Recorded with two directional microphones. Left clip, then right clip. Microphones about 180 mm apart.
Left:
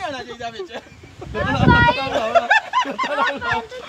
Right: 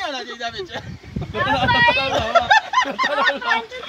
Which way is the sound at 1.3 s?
50° right (ahead or behind).